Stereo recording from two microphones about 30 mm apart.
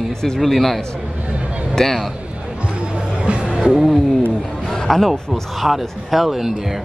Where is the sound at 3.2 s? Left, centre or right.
Right.